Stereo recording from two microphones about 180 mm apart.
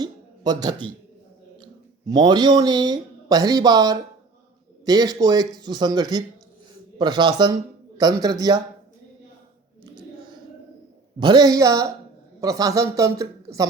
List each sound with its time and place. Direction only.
0.0 s a sound: 20° right (ahead or behind)
2.0 s speech: 25° right (ahead or behind)
11.2 s speech: 25° right (ahead or behind)